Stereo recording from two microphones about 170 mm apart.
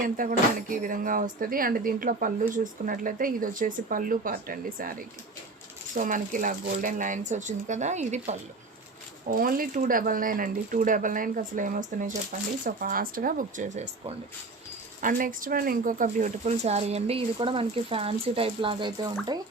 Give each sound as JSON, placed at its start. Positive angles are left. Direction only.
{"t": 0.0, "sound": "speech", "side_deg": -55}
{"t": 9.3, "sound": "speech", "side_deg": -60}
{"t": 15.0, "sound": "speech", "side_deg": -55}